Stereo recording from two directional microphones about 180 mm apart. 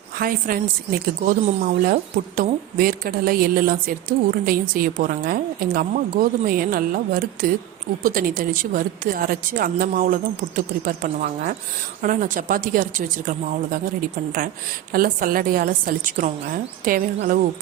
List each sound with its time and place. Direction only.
0.2 s a woman's voice: 55° right (ahead or behind)
14.9 s a woman's voice: 50° right (ahead or behind)